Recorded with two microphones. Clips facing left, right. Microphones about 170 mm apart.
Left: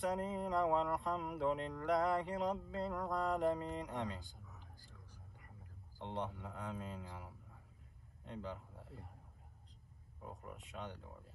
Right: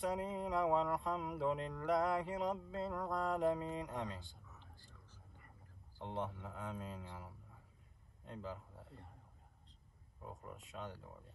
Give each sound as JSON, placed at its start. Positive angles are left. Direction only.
{"t": 0.0, "sound": "speech", "side_deg": 0}
{"t": 5.9, "sound": "a man's voice", "side_deg": 0}
{"t": 10.2, "sound": "speech", "side_deg": 0}